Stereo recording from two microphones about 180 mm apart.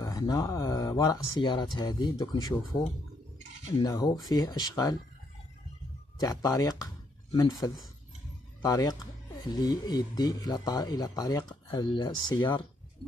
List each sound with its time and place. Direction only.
0.0 s speech: 20° left (ahead or behind)
3.8 s speech: 20° left (ahead or behind)
6.1 s speech: 20° left (ahead or behind)